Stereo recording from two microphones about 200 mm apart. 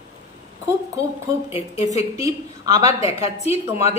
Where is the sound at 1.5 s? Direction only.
30° left (ahead or behind).